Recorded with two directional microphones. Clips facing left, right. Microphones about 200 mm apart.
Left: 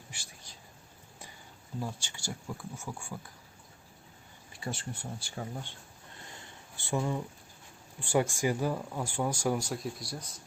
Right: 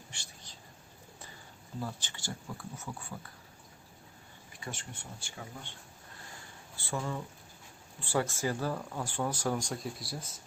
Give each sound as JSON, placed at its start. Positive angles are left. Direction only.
{"t": 0.1, "sound": "a sound", "side_deg": 10}
{"t": 1.8, "sound": "speech", "side_deg": 10}
{"t": 4.6, "sound": "speech", "side_deg": 35}
{"t": 6.7, "sound": "speech", "side_deg": 15}